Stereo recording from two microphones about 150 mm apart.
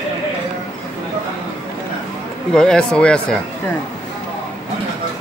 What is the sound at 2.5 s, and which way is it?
Speech, 5° left (ahead or behind).